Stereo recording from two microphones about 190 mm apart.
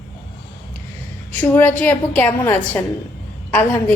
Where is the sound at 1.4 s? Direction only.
10° left (ahead or behind).